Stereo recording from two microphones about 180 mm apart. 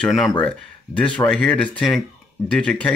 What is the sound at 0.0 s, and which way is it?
Speech, centre (ahead or behind).